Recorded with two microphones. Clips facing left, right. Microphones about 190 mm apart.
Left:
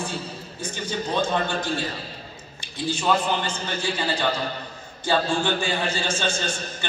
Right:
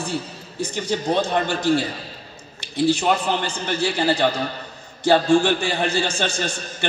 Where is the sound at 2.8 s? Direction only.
75° right (ahead or behind).